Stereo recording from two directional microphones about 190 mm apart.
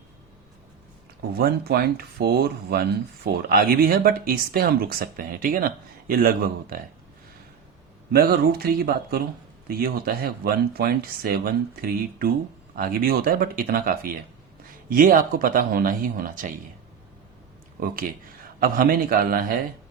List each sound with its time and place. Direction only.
1.4 s speech: 55° right (ahead or behind)
8.1 s speech: 55° right (ahead or behind)
17.8 s speech: 50° right (ahead or behind)